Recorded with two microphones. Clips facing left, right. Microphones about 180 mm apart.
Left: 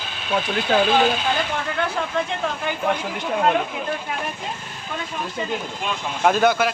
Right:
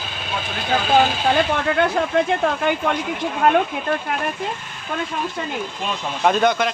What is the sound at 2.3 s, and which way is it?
Speech, 60° right (ahead or behind).